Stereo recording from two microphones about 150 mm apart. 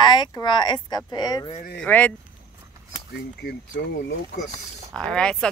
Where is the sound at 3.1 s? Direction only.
90° left.